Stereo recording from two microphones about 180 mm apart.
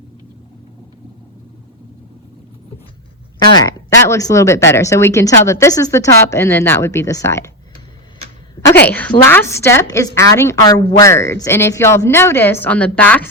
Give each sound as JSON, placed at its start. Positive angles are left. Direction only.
{"t": 3.5, "sound": "speech", "side_deg": 20}
{"t": 8.9, "sound": "speech", "side_deg": 10}